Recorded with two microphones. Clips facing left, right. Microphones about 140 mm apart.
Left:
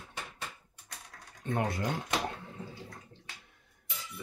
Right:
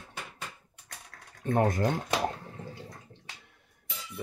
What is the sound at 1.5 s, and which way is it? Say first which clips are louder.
Speech: right 6 dB; 45° right (ahead or behind).